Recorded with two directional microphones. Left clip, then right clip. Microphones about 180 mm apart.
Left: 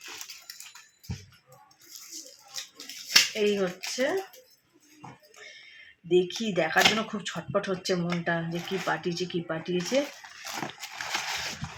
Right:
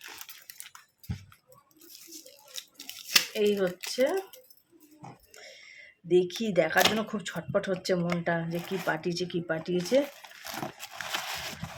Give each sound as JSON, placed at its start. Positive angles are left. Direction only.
{"t": 2.5, "sound": "scissors", "side_deg": -35}
{"t": 6.1, "sound": "speech", "side_deg": -20}
{"t": 10.4, "sound": "a sound", "side_deg": -30}